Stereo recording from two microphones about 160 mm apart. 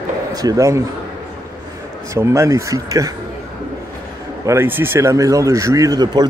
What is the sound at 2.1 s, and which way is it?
Speech, 20° right (ahead or behind).